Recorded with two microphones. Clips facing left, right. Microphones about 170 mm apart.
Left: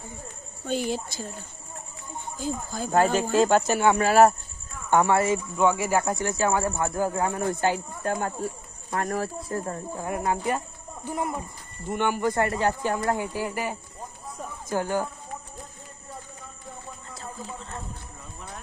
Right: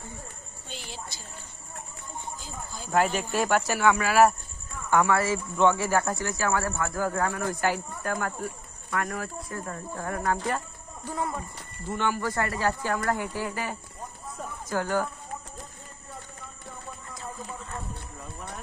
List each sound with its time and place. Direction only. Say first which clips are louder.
0.7 s speech: left 14 dB; 45° left (ahead or behind)
2.4 s speech: left 10 dB; 45° left (ahead or behind)
2.9 s speech: left 4 dB; 30° left (ahead or behind)
9.9 s speech: left 1 dB; 15° left (ahead or behind)
17.1 s a sound: left 1 dB; 30° left (ahead or behind)